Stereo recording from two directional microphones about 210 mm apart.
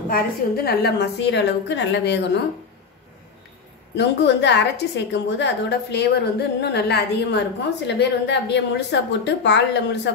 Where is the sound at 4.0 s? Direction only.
55° left (ahead or behind).